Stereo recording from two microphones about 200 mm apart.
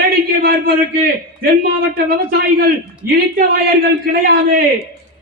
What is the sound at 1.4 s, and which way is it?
A man's voice, 50° right (ahead or behind).